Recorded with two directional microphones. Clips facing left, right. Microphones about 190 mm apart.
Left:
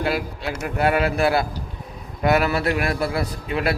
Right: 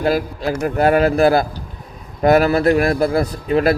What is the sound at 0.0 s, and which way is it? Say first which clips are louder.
A man's voice: right 6 dB; 40° right (ahead or behind).